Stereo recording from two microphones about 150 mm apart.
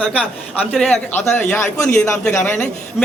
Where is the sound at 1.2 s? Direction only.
15° left (ahead or behind).